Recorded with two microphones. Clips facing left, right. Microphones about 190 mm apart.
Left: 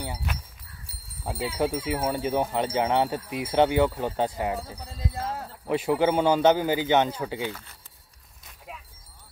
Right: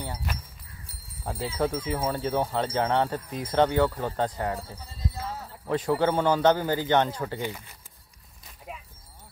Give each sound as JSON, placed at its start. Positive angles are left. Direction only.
{"t": 0.8, "sound": "speech", "side_deg": 10}
{"t": 4.7, "sound": "a sound", "side_deg": 65}
{"t": 5.7, "sound": "speech", "side_deg": 10}
{"t": 7.4, "sound": "speech", "side_deg": -10}
{"t": 8.5, "sound": "dog", "side_deg": 0}